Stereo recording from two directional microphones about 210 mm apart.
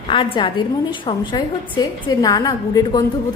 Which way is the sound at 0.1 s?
25° left (ahead or behind).